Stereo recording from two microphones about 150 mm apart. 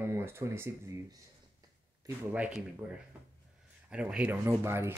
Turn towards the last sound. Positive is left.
turn(degrees=-15)  # may be behind; listen again after turning